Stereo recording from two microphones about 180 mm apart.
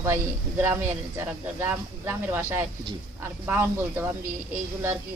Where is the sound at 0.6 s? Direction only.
15° right (ahead or behind).